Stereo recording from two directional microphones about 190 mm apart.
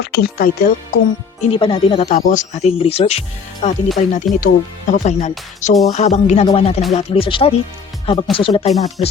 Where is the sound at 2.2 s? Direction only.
40° left (ahead or behind).